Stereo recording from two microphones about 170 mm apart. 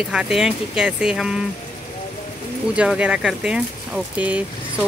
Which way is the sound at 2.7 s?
5° right (ahead or behind).